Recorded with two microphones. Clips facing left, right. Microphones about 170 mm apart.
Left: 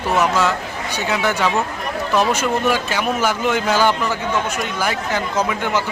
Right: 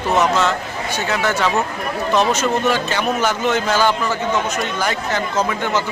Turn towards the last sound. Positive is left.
turn(degrees=10)  # may be behind; listen again after turning